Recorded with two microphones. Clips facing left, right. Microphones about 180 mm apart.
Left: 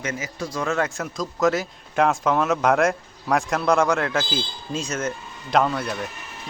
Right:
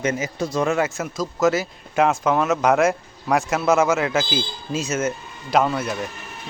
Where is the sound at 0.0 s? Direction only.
25° right (ahead or behind).